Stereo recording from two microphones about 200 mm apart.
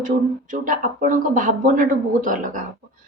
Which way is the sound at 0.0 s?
40° right (ahead or behind).